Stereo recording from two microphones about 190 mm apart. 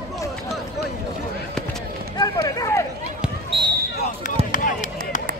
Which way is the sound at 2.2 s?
20° left (ahead or behind).